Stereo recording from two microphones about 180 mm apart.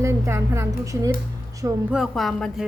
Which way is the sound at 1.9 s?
Centre (ahead or behind).